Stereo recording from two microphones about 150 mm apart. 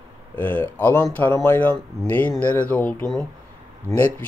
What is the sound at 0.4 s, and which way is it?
Speech, 10° left (ahead or behind).